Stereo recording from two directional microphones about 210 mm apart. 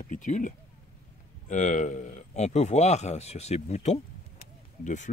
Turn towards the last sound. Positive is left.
turn(degrees=35)  # may be behind; listen again after turning